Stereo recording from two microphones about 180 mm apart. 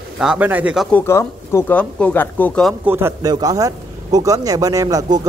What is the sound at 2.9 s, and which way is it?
A man's voice, 15° right (ahead or behind).